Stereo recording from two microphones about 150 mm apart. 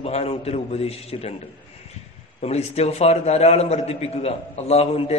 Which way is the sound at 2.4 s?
45° left (ahead or behind).